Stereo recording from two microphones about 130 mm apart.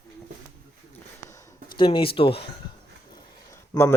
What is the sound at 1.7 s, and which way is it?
Speech, 40° left (ahead or behind).